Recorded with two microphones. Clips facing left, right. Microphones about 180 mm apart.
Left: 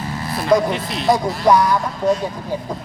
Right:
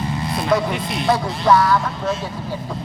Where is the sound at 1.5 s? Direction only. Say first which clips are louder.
Even; 15° left (ahead or behind).